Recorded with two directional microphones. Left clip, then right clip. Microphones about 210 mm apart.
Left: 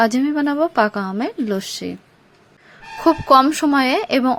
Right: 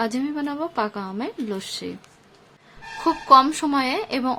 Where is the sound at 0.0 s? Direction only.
25° left (ahead or behind).